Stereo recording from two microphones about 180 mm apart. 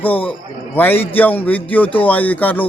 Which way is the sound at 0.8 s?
10° left (ahead or behind).